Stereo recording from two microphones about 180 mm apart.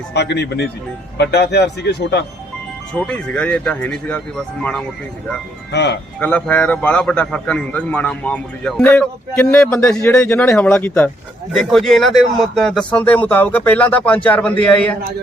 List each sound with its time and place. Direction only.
0.1 s a man's voice: 70° left (ahead or behind)
2.9 s a man's voice: 5° left (ahead or behind)
5.7 s a man's voice: 70° left (ahead or behind)
6.1 s a man's voice: 5° left (ahead or behind)